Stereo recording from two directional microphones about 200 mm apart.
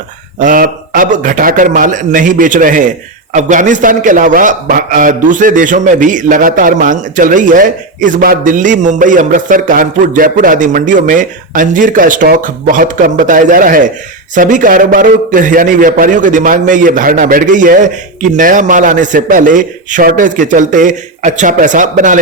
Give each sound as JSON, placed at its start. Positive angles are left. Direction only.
{"t": 0.3, "sound": "a man's voice", "side_deg": -40}